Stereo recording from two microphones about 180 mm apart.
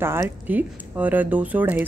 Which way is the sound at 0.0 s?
15° right (ahead or behind).